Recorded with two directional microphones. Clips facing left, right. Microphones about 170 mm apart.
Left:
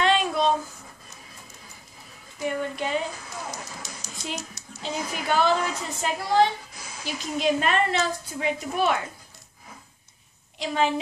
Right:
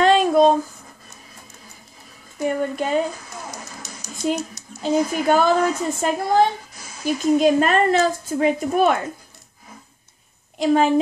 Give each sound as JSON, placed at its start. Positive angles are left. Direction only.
{"t": 0.0, "sound": "a sound", "side_deg": -45}
{"t": 2.3, "sound": "a woman's voice", "side_deg": -45}
{"t": 4.8, "sound": "a woman's voice", "side_deg": -45}
{"t": 10.6, "sound": "a woman's voice", "side_deg": -45}